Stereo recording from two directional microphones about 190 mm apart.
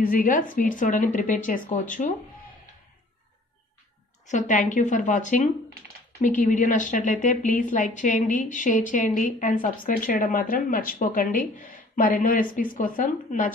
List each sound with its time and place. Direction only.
0.0 s a woman's voice: 45° left (ahead or behind)
4.3 s a woman's voice: 40° left (ahead or behind)